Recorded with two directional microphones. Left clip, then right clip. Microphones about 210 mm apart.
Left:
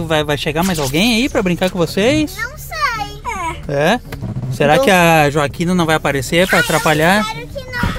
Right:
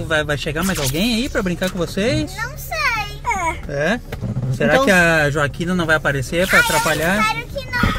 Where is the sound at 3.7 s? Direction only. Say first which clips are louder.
Left 5 dB; 35° left (ahead or behind).